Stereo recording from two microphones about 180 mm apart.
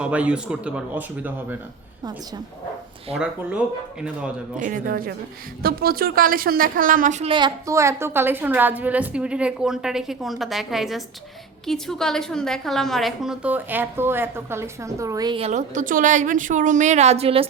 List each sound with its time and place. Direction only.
0.0 s speech: 5° right (ahead or behind)
4.6 s a woman's voice: 50° right (ahead or behind)
7.3 s a woman's voice: 25° right (ahead or behind)
15.4 s a woman's voice: 40° right (ahead or behind)